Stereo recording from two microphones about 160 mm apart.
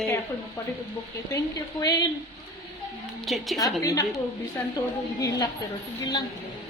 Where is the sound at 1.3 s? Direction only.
20° left (ahead or behind).